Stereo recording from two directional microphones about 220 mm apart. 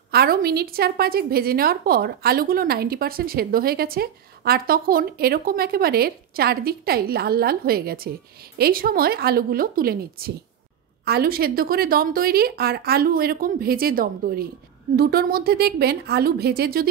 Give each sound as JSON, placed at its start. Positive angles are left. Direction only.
{"t": 0.1, "sound": "a woman's voice", "side_deg": -45}